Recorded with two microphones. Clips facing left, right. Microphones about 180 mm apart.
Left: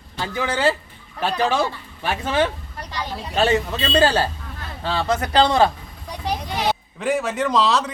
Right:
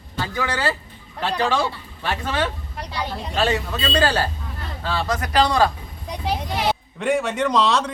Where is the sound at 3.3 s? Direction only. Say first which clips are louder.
Left 3 dB; 25° left (ahead or behind).